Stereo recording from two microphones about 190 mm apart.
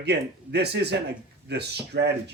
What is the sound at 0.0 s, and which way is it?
Speech, 60° right (ahead or behind).